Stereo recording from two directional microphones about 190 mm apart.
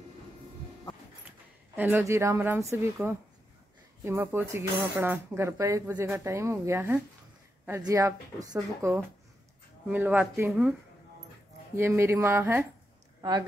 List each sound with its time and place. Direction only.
1.8 s speech: 10° right (ahead or behind)